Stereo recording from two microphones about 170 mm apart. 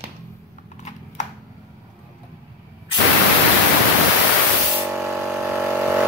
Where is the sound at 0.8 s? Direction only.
45° left (ahead or behind).